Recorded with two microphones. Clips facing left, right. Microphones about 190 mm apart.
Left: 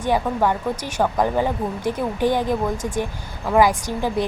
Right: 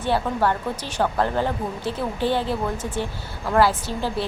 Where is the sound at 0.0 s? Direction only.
15° left (ahead or behind).